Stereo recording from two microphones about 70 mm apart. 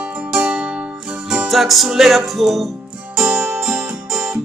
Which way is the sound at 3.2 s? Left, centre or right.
Centre.